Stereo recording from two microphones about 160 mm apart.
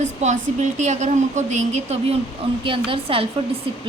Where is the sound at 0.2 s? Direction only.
50° right (ahead or behind).